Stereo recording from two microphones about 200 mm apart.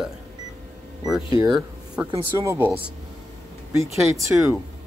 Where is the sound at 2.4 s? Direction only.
15° right (ahead or behind).